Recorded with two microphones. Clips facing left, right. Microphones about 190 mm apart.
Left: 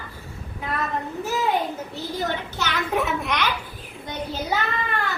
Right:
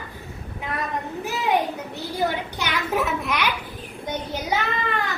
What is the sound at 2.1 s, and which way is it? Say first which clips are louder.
Speech: right 3 dB; 10° right (ahead or behind).